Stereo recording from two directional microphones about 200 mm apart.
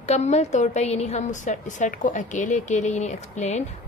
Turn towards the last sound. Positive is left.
turn(degrees=35)  # may be behind; listen again after turning